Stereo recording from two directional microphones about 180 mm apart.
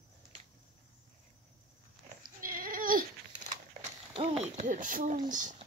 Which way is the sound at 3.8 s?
35° right (ahead or behind).